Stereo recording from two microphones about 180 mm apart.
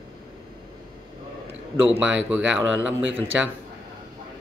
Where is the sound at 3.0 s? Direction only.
90° right.